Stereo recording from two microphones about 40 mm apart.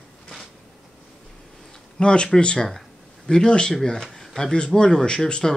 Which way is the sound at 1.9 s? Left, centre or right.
Left.